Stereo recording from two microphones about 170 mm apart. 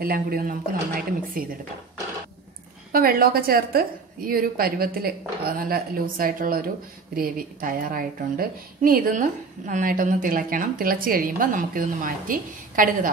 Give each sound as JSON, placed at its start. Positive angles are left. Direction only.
{"t": 0.0, "sound": "a woman's voice", "side_deg": -60}
{"t": 2.9, "sound": "a woman's voice", "side_deg": -60}